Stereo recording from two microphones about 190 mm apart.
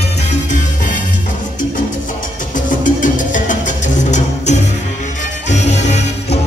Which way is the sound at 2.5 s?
45° left (ahead or behind).